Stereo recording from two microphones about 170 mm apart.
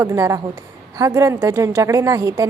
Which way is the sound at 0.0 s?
20° right (ahead or behind).